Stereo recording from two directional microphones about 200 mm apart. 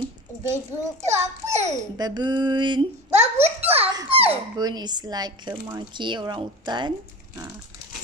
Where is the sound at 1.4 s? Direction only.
15° right (ahead or behind).